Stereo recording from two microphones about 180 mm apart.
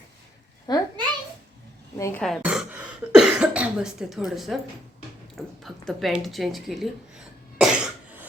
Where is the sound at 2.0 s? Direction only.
15° left (ahead or behind).